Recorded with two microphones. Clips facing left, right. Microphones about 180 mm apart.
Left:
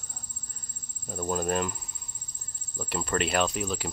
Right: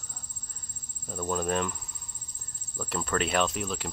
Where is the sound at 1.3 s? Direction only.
5° left (ahead or behind).